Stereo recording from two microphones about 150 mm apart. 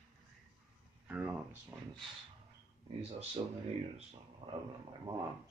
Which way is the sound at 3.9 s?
35° right (ahead or behind).